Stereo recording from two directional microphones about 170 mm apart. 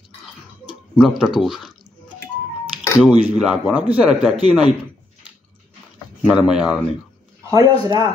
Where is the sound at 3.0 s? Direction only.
5° right (ahead or behind).